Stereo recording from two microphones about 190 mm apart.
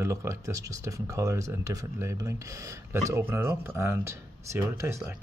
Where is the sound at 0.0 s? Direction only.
15° right (ahead or behind).